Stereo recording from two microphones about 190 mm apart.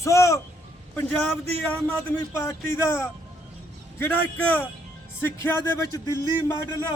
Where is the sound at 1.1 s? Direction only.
5° left (ahead or behind).